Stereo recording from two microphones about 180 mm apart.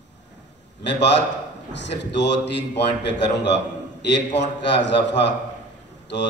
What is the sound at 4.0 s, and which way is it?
A man's voice, 75° left (ahead or behind).